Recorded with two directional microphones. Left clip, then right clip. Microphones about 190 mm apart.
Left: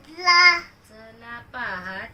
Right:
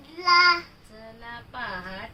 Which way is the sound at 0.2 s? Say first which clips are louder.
Left 3 dB; 5° left (ahead or behind).